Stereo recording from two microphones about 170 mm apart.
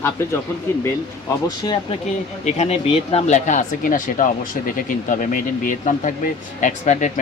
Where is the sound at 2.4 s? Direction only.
40° left (ahead or behind).